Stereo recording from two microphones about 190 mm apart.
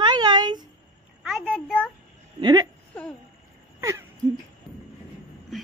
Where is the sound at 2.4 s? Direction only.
20° right (ahead or behind).